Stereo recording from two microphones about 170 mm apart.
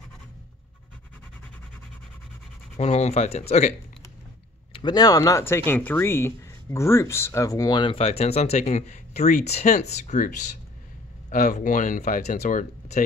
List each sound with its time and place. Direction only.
2.8 s speech: 40° left (ahead or behind)
4.7 s speech: 25° left (ahead or behind); by 13.0 s 45° left (ahead or behind)